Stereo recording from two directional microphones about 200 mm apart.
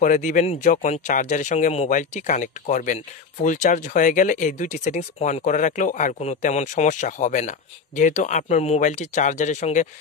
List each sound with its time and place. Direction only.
0.0 s speech: 40° left (ahead or behind)